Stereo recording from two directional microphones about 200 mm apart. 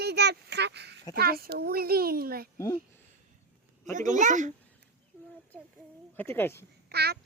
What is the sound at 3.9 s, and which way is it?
Speech, 40° right (ahead or behind).